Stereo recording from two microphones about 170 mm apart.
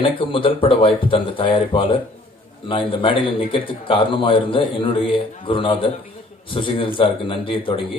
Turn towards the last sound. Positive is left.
turn(degrees=30)  # may be behind; listen again after turning